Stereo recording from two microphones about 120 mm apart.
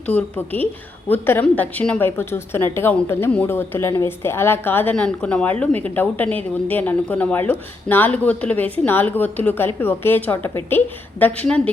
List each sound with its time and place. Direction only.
0.0 s a woman's voice: 15° left (ahead or behind)